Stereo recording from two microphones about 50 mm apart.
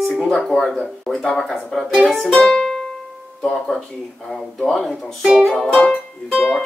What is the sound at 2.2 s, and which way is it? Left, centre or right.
Music, centre.